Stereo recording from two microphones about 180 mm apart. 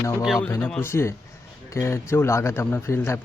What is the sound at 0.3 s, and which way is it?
A man's voice, 15° left (ahead or behind).